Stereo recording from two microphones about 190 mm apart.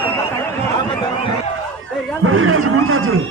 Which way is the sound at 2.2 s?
90° right.